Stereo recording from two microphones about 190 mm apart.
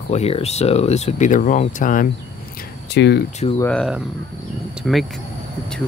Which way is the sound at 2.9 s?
65° left (ahead or behind).